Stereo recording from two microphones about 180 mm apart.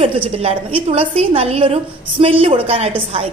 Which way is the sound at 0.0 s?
30° right (ahead or behind).